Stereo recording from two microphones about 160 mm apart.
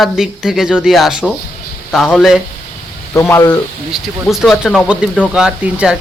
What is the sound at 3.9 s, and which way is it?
Speech, centre (ahead or behind).